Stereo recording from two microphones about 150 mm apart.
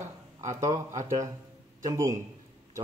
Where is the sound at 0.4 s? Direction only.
20° right (ahead or behind).